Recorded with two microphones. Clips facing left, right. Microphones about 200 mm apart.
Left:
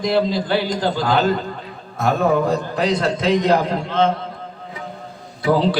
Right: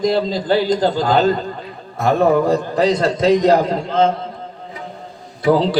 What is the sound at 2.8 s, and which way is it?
A man's voice, 40° right (ahead or behind).